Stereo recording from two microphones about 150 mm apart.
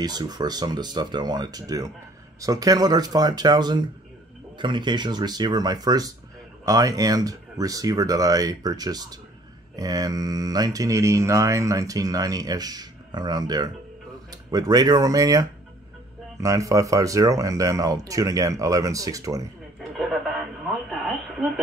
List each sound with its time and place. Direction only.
0.0 s speech: 25° right (ahead or behind)